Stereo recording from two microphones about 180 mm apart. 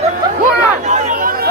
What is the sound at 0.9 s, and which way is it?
Chatter, 45° right (ahead or behind).